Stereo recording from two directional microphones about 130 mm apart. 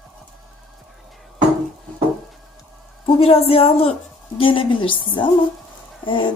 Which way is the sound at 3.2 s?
50° left (ahead or behind).